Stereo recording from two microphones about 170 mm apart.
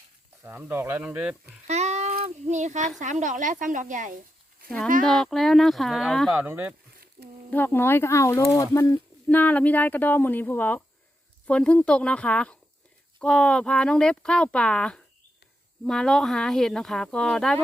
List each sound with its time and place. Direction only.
0.4 s speech: 15° right (ahead or behind)
1.6 s a sound: 40° right (ahead or behind)
2.2 s a woman's voice: 40° right (ahead or behind)
5.0 s speech: 5° left (ahead or behind)
6.4 s speech: 10° right (ahead or behind)
7.5 s speech: 10° left (ahead or behind)